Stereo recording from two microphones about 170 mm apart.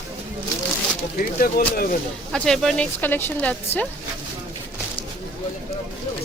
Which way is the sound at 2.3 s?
5° left (ahead or behind).